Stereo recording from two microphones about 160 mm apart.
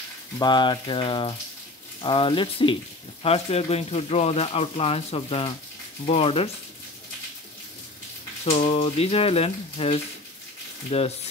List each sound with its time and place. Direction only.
0.4 s speech: 30° left (ahead or behind)
8.5 s speech: 40° left (ahead or behind)